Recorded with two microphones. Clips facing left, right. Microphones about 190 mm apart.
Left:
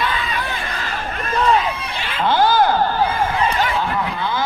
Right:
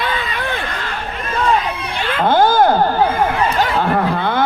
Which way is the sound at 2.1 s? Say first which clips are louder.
Right 3 dB; 50° right (ahead or behind).